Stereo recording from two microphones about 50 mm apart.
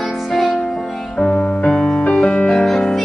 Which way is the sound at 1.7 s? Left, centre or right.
Centre.